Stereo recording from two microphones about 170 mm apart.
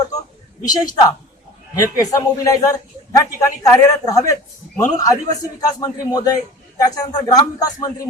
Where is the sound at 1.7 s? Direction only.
20° left (ahead or behind).